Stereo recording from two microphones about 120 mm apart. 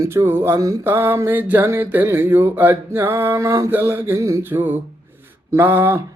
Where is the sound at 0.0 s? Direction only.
20° right (ahead or behind).